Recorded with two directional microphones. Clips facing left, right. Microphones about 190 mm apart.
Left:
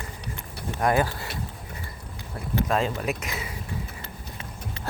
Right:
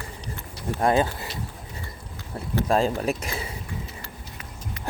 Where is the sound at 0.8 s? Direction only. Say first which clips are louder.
Right 2 dB; 25° right (ahead or behind).